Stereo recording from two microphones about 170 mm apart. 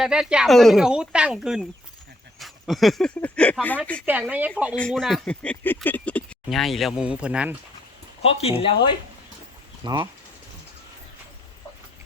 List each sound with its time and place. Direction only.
0.0 s speech: 5° right (ahead or behind)
4.0 s speech: 10° right (ahead or behind)
4.8 s speech: centre (ahead or behind)
8.2 s speech: 35° left (ahead or behind)
9.8 s speech: 25° right (ahead or behind)